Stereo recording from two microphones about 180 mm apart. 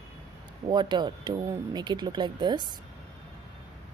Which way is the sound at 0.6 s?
25° right (ahead or behind).